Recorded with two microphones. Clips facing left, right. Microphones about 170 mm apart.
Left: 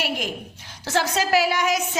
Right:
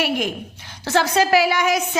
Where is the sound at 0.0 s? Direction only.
65° right (ahead or behind).